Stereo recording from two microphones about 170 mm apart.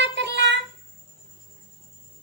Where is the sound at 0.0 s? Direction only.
90° right.